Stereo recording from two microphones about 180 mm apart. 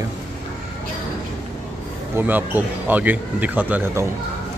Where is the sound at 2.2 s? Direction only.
10° right (ahead or behind).